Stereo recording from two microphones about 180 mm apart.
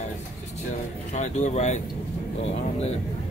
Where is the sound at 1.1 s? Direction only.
40° left (ahead or behind).